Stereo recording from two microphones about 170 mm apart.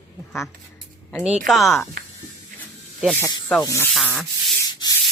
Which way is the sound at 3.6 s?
20° left (ahead or behind).